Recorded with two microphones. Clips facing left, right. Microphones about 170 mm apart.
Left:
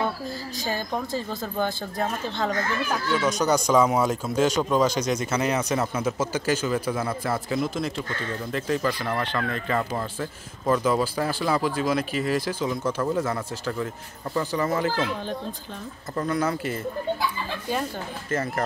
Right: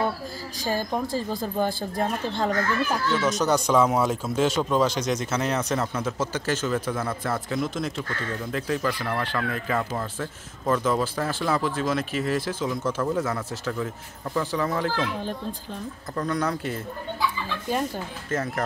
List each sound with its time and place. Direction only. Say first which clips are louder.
1.3 s speech: right 1 dB; 10° right (ahead or behind)